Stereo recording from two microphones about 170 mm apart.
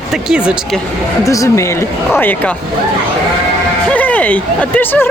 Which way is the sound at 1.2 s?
20° left (ahead or behind).